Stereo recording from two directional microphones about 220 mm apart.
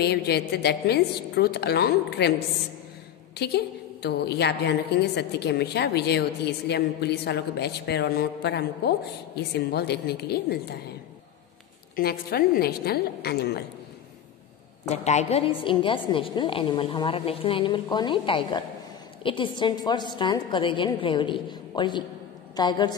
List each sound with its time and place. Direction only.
0.0 s a woman's voice: 45° left (ahead or behind)
3.3 s a woman's voice: 50° left (ahead or behind)
11.9 s a woman's voice: 45° left (ahead or behind)
14.9 s a woman's voice: 30° left (ahead or behind)